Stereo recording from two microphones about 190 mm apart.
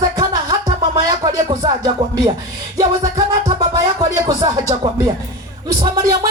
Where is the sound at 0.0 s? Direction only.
20° right (ahead or behind).